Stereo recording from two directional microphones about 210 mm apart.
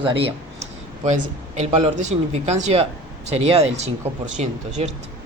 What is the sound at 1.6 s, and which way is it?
Speech, 30° right (ahead or behind).